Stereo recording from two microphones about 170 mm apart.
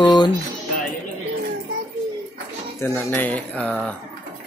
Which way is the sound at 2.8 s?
15° left (ahead or behind).